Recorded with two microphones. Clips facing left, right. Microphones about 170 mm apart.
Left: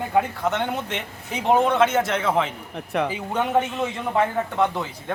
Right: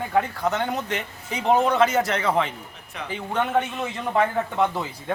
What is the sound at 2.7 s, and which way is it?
Speech, 60° left (ahead or behind).